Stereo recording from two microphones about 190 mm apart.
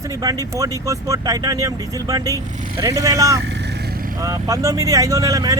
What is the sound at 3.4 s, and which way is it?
Vehicle, 65° right (ahead or behind).